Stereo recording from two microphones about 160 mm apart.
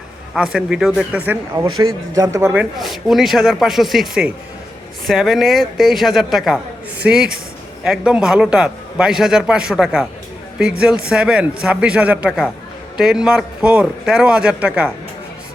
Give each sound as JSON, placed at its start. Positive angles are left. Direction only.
{"t": 0.3, "sound": "a man's voice", "side_deg": -5}
{"t": 1.6, "sound": "a man's voice", "side_deg": -20}
{"t": 2.5, "sound": "a man's voice", "side_deg": -5}